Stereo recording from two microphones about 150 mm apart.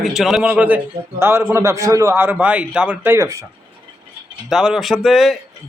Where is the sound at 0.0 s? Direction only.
Centre (ahead or behind); by 3.4 s 20° right (ahead or behind).